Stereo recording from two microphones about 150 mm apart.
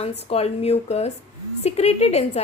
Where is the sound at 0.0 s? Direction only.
45° left (ahead or behind).